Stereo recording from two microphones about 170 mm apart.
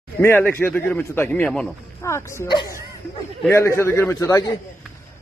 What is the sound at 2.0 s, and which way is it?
A man's voice, 15° left (ahead or behind).